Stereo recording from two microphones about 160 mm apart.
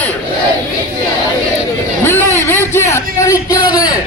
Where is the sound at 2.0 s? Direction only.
15° left (ahead or behind).